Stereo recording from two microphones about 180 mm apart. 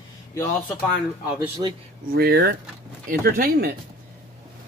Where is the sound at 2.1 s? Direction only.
60° right (ahead or behind).